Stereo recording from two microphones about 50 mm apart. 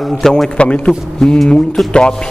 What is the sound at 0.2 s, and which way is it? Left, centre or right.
Speech, centre.